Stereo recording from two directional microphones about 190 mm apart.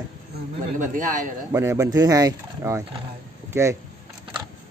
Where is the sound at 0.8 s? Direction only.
45° right (ahead or behind).